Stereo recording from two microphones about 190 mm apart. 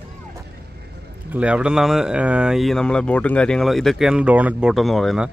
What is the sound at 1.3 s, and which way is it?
Speech, 5° right (ahead or behind).